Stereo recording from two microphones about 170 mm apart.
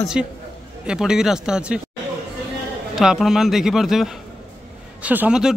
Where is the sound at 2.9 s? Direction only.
Centre (ahead or behind).